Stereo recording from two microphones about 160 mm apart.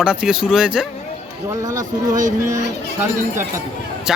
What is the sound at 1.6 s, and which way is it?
Speech, 20° right (ahead or behind).